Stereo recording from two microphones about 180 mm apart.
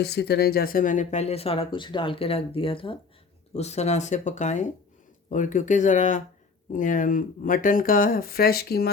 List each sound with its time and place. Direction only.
0.0 s speech: 65° left (ahead or behind)